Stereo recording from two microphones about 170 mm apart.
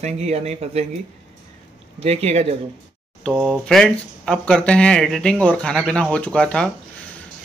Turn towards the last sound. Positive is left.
turn(degrees=5)  # may be behind; listen again after turning